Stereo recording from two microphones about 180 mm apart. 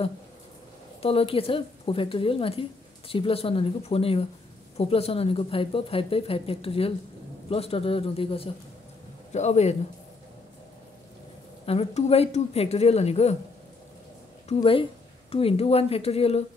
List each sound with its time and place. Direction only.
1.0 s speech: 30° left (ahead or behind)
11.6 s speech: 35° left (ahead or behind)
14.5 s speech: 30° left (ahead or behind)